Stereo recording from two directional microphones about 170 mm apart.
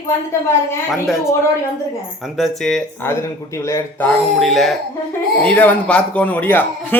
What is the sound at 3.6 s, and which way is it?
Speech, 15° left (ahead or behind).